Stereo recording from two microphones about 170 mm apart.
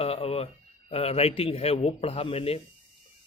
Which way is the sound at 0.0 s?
35° left (ahead or behind).